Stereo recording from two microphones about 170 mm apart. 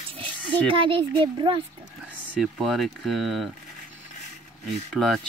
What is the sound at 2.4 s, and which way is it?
Speech, centre (ahead or behind).